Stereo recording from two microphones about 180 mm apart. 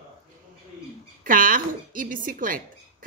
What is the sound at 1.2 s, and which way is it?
A woman's voice, 50° right (ahead or behind).